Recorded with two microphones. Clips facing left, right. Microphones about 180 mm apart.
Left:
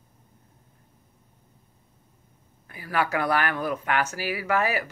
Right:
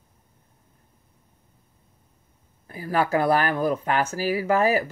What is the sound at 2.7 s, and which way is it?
Speech, 35° right (ahead or behind).